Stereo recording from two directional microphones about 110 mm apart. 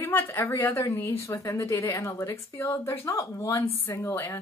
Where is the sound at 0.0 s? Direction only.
20° left (ahead or behind).